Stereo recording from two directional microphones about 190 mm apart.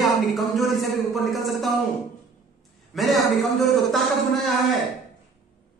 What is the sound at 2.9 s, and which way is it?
A man's voice, centre (ahead or behind).